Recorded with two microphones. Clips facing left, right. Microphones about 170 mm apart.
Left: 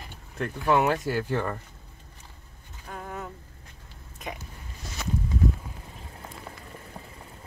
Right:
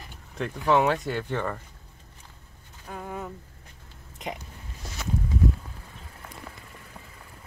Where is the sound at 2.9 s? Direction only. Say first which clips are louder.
Right 2 dB; 10° right (ahead or behind).